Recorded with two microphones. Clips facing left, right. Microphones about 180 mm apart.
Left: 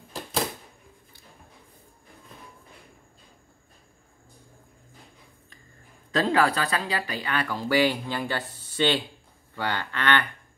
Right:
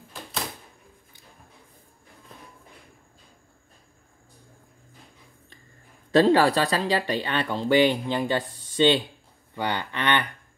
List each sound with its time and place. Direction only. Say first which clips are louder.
6.1 s speech: right 5 dB; 30° right (ahead or behind)